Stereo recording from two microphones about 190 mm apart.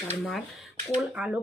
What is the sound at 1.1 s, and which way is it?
Speech, 5° right (ahead or behind).